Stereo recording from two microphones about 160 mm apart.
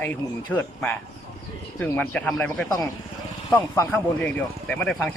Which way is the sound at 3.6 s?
20° left (ahead or behind).